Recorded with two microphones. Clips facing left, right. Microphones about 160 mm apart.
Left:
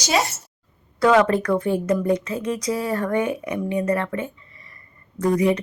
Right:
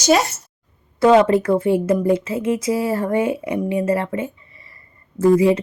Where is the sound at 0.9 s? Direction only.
25° right (ahead or behind).